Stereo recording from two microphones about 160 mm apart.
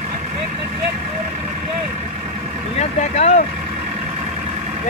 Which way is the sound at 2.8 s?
45° left (ahead or behind).